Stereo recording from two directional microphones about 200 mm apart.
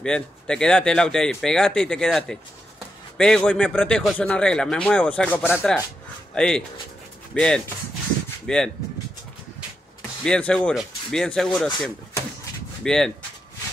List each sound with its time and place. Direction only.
0.0 s a man's voice: 5° left (ahead or behind)
10.2 s a man's voice: 5° left (ahead or behind)